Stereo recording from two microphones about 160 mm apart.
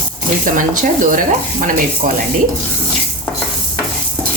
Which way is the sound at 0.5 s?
55° right (ahead or behind).